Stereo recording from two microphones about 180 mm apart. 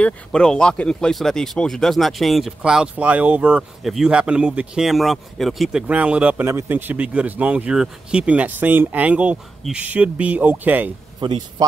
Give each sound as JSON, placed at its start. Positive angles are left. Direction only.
{"t": 0.0, "sound": "speech", "side_deg": 5}
{"t": 11.1, "sound": "speech", "side_deg": -25}